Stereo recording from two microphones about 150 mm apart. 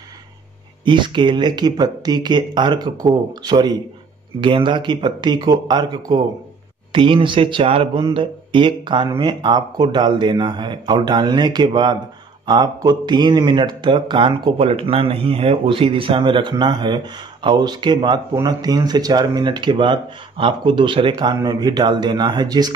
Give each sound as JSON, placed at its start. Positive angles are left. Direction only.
{"t": 0.8, "sound": "speech", "side_deg": -30}